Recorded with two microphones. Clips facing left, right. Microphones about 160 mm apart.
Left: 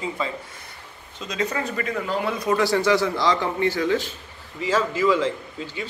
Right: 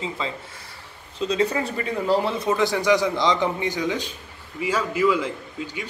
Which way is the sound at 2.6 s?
15° right (ahead or behind).